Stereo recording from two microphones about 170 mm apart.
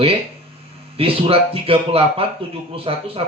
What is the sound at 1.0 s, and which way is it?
Speech, 35° right (ahead or behind).